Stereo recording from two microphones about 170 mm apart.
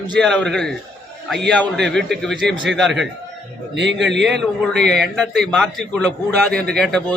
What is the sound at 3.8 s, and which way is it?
Speech, 90° right.